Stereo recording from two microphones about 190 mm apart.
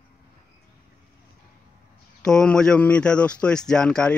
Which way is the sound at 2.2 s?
5° left (ahead or behind).